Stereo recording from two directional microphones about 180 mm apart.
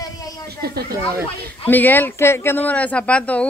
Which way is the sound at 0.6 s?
60° right (ahead or behind).